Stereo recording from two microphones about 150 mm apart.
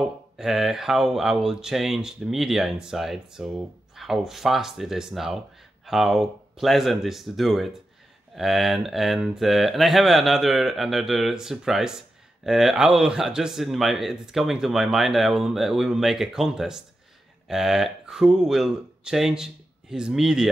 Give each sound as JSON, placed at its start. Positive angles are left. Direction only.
{"t": 0.4, "sound": "speech", "side_deg": 0}